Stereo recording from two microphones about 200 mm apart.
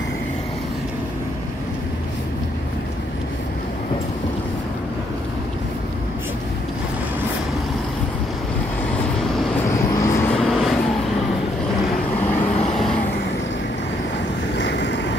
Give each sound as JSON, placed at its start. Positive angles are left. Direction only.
{"t": 8.9, "sound": "vehicle", "side_deg": 10}
{"t": 10.3, "sound": "vehicle", "side_deg": 0}
{"t": 12.3, "sound": "vehicle", "side_deg": 5}
{"t": 14.6, "sound": "vehicle", "side_deg": 65}